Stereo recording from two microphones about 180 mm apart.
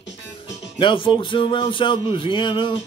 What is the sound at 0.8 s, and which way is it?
Speech, 25° left (ahead or behind).